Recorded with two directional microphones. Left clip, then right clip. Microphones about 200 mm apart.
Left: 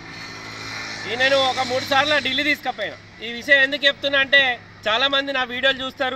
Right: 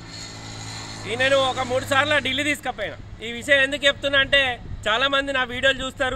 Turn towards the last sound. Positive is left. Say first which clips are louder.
# left 1 dB
turn(degrees=5)  # may be behind; listen again after turning